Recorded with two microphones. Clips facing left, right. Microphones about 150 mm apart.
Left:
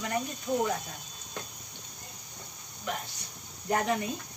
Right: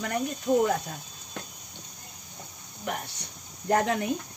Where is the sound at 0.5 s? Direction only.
50° right (ahead or behind).